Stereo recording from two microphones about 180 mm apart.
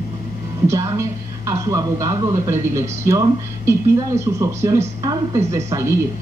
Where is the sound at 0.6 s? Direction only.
15° right (ahead or behind).